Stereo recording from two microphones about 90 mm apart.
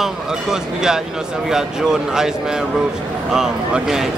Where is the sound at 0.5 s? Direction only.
5° right (ahead or behind).